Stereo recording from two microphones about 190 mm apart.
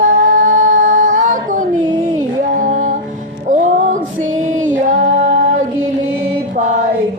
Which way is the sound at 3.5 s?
40° right (ahead or behind).